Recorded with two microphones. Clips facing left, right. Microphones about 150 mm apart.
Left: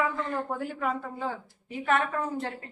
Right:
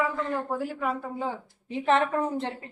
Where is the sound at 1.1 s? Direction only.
15° right (ahead or behind).